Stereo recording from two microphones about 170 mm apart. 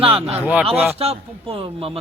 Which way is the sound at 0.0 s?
35° right (ahead or behind).